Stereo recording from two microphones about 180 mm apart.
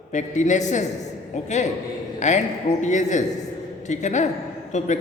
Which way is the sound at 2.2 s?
40° left (ahead or behind).